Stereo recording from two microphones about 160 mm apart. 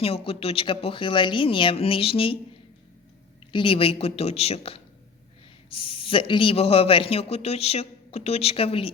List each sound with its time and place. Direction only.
0.0 s a man's voice: 35° left (ahead or behind)
3.5 s a man's voice: 35° left (ahead or behind)